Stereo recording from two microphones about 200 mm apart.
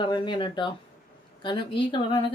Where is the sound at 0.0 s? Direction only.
20° left (ahead or behind).